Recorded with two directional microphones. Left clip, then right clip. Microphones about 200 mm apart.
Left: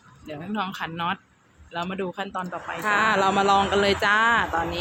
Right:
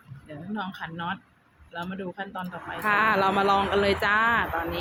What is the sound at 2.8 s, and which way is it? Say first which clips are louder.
Speech: left 1 dB; centre (ahead or behind).